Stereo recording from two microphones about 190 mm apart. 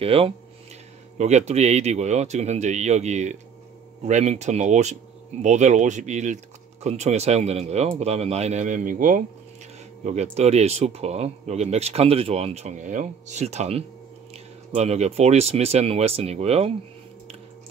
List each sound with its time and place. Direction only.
0.0 s speech: 30° right (ahead or behind)